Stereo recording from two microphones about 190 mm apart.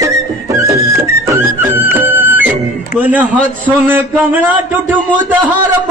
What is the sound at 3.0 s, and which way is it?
A man's voice, 10° right (ahead or behind).